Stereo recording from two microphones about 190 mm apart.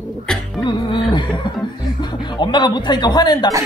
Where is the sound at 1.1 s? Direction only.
25° left (ahead or behind).